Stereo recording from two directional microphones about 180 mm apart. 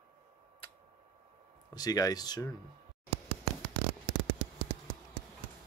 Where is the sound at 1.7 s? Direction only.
20° left (ahead or behind).